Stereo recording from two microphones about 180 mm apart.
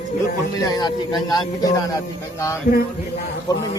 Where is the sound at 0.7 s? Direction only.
25° left (ahead or behind).